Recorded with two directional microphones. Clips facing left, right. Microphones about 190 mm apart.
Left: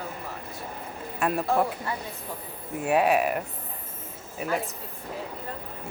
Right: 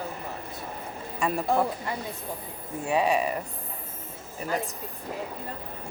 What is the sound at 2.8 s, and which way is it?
Speech, 5° left (ahead or behind).